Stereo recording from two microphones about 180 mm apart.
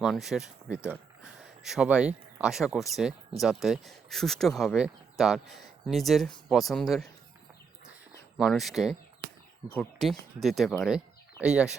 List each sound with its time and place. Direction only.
0.0 s speech: centre (ahead or behind)
8.4 s speech: centre (ahead or behind)